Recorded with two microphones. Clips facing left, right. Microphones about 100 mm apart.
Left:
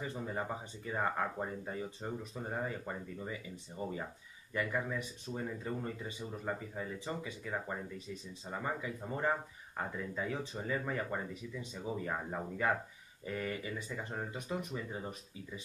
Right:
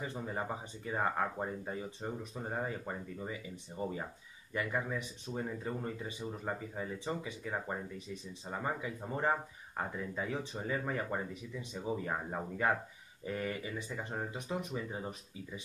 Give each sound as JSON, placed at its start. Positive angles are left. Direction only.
{"t": 0.0, "sound": "speech", "side_deg": -20}